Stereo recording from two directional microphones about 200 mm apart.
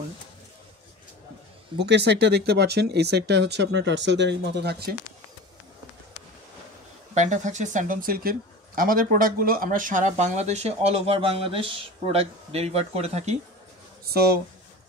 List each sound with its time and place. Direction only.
1.8 s speech: 60° right (ahead or behind)
7.2 s speech: 35° right (ahead or behind)
14.1 s speech: 55° right (ahead or behind)